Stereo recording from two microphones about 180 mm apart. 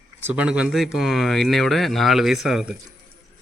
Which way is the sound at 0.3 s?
5° right (ahead or behind).